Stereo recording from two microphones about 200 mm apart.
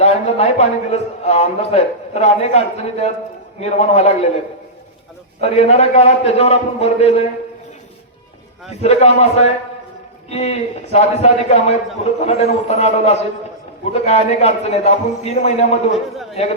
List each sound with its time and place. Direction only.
0.0 s a man's voice: 30° left (ahead or behind)
5.4 s a man's voice: 30° left (ahead or behind)
8.8 s a man's voice: 30° left (ahead or behind)